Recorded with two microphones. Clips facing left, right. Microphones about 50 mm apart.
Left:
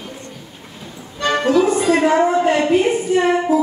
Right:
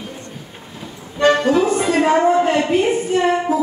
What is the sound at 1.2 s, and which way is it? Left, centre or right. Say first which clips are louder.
Music: right 5 dB; right.